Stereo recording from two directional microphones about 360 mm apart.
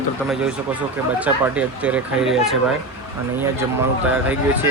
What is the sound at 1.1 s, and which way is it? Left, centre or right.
Speech, centre.